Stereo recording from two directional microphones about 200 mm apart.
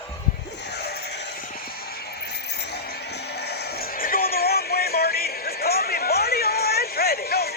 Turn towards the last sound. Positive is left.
turn(degrees=50)  # may be behind; listen again after turning